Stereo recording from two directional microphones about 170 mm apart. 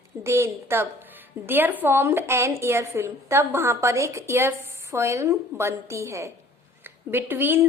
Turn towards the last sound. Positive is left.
turn(degrees=-10)  # may be behind; listen again after turning